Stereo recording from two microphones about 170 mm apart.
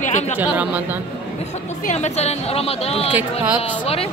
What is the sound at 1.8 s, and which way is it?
A woman's voice, 40° left (ahead or behind).